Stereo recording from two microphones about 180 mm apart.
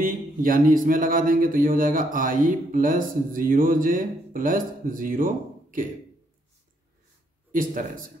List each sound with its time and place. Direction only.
0.0 s speech: 50° right (ahead or behind)
7.5 s speech: 50° right (ahead or behind)